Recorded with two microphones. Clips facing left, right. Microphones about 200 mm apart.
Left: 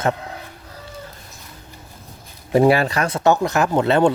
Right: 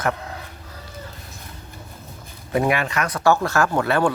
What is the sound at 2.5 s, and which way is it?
Speech, 35° left (ahead or behind).